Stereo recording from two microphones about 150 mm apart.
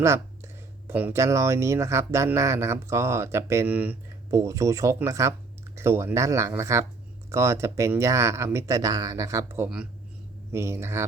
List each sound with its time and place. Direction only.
0.0 s speech: 20° right (ahead or behind)